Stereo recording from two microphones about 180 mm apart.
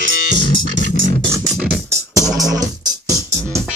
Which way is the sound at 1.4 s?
5° right (ahead or behind).